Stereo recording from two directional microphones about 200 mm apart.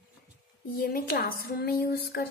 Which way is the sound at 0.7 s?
50° left (ahead or behind).